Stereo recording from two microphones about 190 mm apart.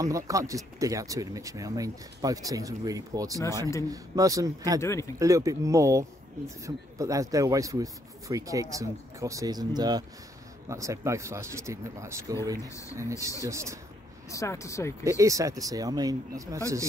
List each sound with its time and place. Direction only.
0.0 s speech: 15° right (ahead or behind)
4.8 s speech: 15° left (ahead or behind)
5.2 s speech: 15° right (ahead or behind)
13.4 s speech: 15° right (ahead or behind)
14.3 s speech: 15° left (ahead or behind)
15.0 s speech: 15° right (ahead or behind)